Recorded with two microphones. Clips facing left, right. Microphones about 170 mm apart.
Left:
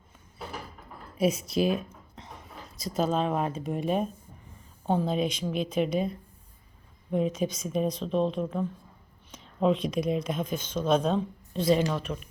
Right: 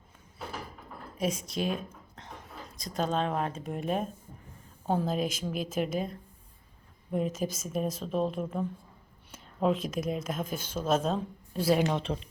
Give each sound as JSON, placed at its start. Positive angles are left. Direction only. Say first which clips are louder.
{"t": 1.5, "sound": "a woman's voice", "louder": "left 6 dB", "side_deg": 5}
{"t": 7.1, "sound": "a woman's voice", "louder": "left 3 dB", "side_deg": 0}
{"t": 11.8, "sound": "speech", "louder": "even", "side_deg": -25}